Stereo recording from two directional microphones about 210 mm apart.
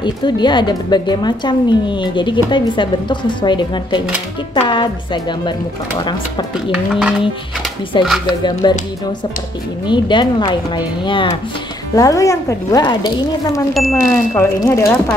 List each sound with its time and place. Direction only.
0.0 s a woman's voice: 20° left (ahead or behind)
6.7 s speech: 5° right (ahead or behind)
7.9 s a woman's voice: 20° left (ahead or behind)
9.8 s a woman's voice: 20° left (ahead or behind)
13.7 s speech: centre (ahead or behind)
14.4 s a woman's voice: 15° left (ahead or behind)